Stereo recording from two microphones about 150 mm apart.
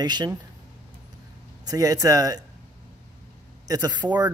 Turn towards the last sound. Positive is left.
turn(degrees=-30)  # may be behind; listen again after turning